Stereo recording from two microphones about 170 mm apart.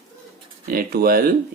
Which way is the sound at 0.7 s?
60° right (ahead or behind).